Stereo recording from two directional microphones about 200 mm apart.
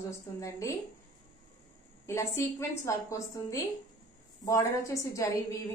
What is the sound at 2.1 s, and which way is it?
A woman's voice, 15° left (ahead or behind).